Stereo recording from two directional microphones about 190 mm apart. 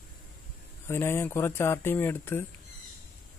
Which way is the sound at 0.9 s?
15° left (ahead or behind).